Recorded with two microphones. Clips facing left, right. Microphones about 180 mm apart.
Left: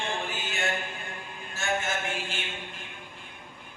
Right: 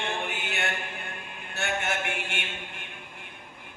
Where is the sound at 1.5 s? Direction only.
65° right (ahead or behind).